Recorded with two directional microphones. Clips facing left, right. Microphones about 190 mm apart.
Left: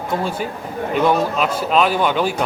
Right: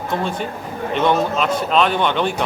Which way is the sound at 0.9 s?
5° left (ahead or behind).